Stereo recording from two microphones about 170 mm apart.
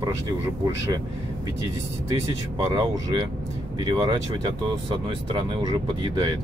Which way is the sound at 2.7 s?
25° right (ahead or behind).